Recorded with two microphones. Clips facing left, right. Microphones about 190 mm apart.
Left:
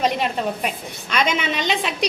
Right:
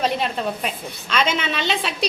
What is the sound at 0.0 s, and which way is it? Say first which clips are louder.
A woman's voice: left 1 dB; 15° left (ahead or behind).